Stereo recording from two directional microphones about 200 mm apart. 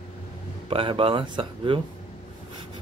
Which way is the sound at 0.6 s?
25° right (ahead or behind).